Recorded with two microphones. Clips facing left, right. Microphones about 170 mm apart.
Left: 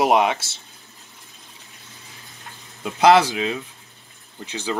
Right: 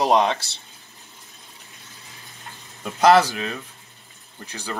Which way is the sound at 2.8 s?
15° left (ahead or behind).